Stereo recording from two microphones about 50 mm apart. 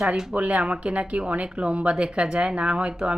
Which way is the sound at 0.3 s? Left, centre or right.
Right.